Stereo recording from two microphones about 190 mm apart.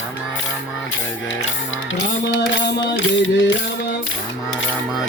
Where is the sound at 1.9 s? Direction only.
80° left.